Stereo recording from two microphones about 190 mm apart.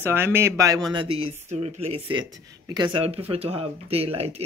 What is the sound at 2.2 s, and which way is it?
Speech, 20° right (ahead or behind).